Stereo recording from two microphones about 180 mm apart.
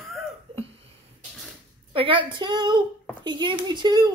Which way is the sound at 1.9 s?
30° right (ahead or behind).